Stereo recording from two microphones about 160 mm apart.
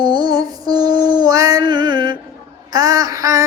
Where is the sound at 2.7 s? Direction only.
25° right (ahead or behind).